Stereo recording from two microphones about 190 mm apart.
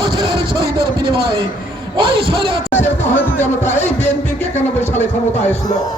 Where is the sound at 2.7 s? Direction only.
10° left (ahead or behind).